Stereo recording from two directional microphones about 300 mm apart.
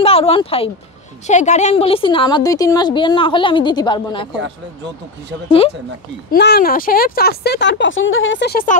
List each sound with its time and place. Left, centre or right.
0.0 s a woman's voice: centre
6.3 s speech: left